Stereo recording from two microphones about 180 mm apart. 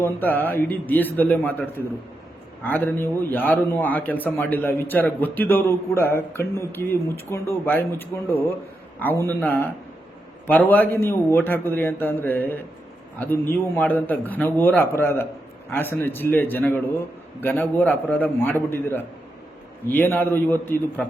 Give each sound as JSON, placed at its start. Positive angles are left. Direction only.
{"t": 0.0, "sound": "a man's voice", "side_deg": 10}